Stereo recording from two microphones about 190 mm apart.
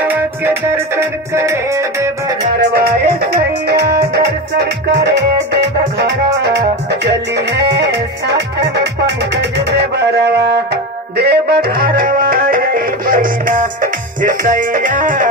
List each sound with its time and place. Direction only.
0.0 s music: 10° right (ahead or behind)
2.6 s music: 55° right (ahead or behind)